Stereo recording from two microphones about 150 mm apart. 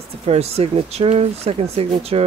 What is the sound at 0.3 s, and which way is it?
Speech, 45° right (ahead or behind).